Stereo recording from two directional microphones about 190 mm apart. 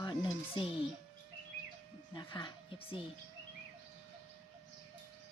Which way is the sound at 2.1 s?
20° left (ahead or behind).